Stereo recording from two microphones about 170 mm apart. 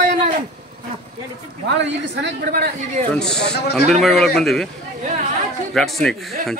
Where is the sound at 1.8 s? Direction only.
90° right.